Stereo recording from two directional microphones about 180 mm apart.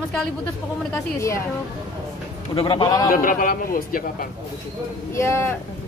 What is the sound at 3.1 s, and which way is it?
A man's voice, 50° left (ahead or behind).